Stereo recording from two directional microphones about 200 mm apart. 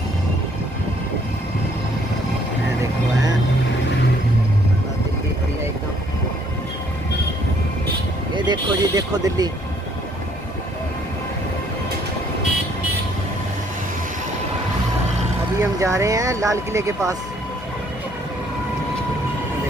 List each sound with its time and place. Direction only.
8.4 s vehicle: 20° right (ahead or behind)
15.6 s speech: 15° right (ahead or behind)